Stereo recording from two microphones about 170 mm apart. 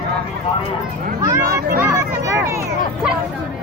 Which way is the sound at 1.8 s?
20° right (ahead or behind).